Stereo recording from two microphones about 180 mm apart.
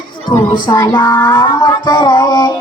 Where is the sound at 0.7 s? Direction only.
25° left (ahead or behind).